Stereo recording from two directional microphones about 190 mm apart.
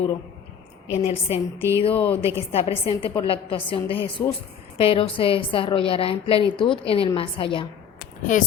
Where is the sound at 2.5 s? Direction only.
30° left (ahead or behind).